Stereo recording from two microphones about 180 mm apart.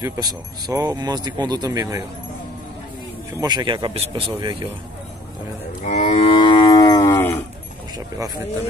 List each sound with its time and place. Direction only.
0.0 s speech: 20° right (ahead or behind)
3.3 s speech: 25° right (ahead or behind)
5.9 s livestock: 40° left (ahead or behind); by 7.3 s 15° left (ahead or behind)